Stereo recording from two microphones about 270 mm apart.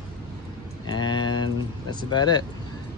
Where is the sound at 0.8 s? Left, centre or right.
Centre.